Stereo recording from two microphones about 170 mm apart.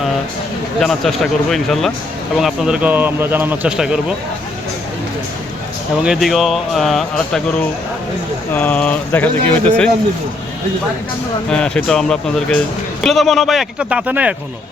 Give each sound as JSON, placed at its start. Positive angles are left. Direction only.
{"t": 0.8, "sound": "speech", "side_deg": 0}
{"t": 6.0, "sound": "speech", "side_deg": 0}
{"t": 8.5, "sound": "speech", "side_deg": 10}
{"t": 11.4, "sound": "speech", "side_deg": 5}